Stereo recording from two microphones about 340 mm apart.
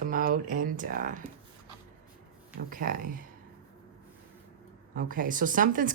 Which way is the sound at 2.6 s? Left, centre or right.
Right.